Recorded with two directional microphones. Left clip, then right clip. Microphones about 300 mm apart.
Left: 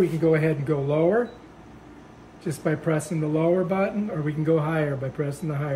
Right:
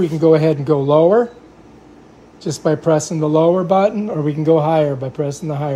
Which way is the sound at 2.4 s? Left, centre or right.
Right.